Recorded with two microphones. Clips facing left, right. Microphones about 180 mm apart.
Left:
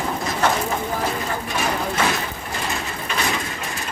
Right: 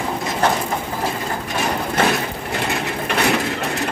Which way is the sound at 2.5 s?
65° right (ahead or behind).